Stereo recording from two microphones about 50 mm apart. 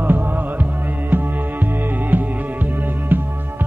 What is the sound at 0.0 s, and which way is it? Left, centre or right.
Music, right.